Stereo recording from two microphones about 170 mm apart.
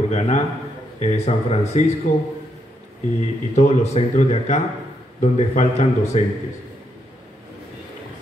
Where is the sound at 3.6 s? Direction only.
40° left (ahead or behind).